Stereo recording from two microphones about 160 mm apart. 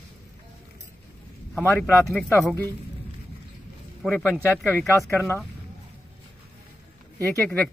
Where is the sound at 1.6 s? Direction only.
15° left (ahead or behind).